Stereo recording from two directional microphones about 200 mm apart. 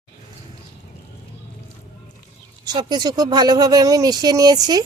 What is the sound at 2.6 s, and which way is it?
Speech, 20° right (ahead or behind).